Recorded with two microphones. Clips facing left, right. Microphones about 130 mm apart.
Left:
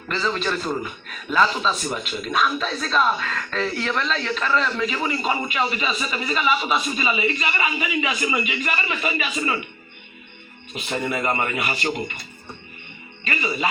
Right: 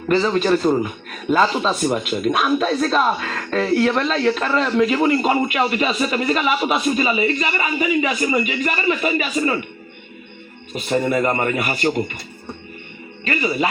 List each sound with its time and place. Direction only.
0.3 s speech: 40° right (ahead or behind)
10.8 s speech: 40° right (ahead or behind)
13.2 s speech: 55° right (ahead or behind)